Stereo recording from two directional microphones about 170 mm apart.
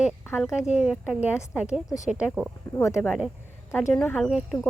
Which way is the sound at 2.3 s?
Centre (ahead or behind).